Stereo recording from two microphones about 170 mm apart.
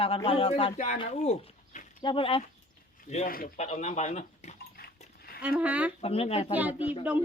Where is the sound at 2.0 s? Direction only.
30° left (ahead or behind).